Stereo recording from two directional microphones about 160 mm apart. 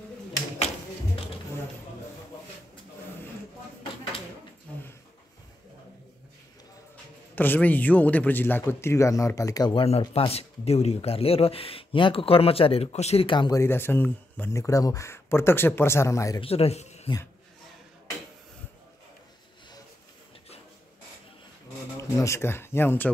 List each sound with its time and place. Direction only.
7.3 s a man's voice: 10° left (ahead or behind); by 13.6 s 30° left (ahead or behind)
13.6 s speech: 15° left (ahead or behind)
16.3 s a man's voice: 40° left (ahead or behind)
21.9 s speech: 20° left (ahead or behind)